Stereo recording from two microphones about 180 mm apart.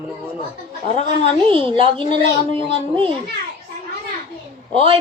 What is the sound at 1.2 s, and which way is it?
Speech, 30° right (ahead or behind).